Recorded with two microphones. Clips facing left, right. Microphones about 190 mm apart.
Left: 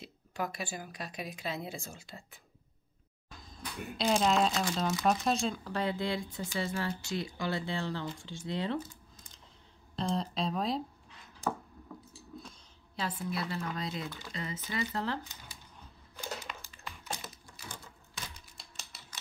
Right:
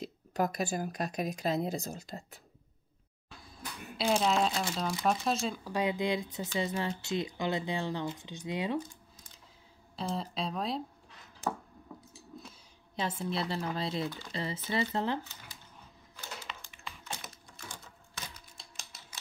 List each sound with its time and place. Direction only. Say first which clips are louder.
0.0 s speech: right 6 dB; 40° right (ahead or behind)
3.9 s speech: even; centre (ahead or behind)
5.7 s speech: right 5 dB; 15° right (ahead or behind)
12.9 s speech: right 2 dB; 25° right (ahead or behind)
16.2 s typing: left 4 dB; 10° left (ahead or behind)
18.8 s a sound: even; centre (ahead or behind)